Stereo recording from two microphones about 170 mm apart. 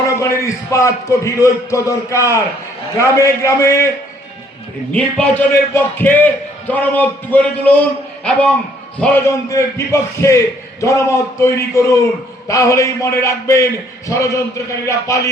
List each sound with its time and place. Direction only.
0.1 s a man's voice: 20° left (ahead or behind)